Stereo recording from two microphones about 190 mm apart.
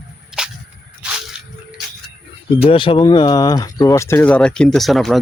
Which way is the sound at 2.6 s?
25° left (ahead or behind).